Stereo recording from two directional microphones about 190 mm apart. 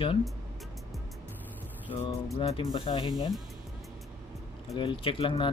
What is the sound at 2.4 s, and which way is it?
Speech, 25° left (ahead or behind).